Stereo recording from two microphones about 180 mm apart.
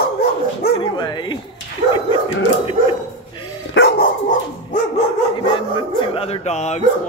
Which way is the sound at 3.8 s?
65° left (ahead or behind).